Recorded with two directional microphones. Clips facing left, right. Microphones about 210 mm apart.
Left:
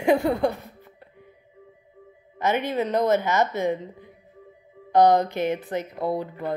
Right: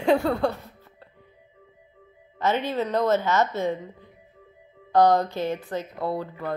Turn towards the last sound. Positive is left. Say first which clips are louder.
# left 2 dB
turn(degrees=15)  # may be behind; listen again after turning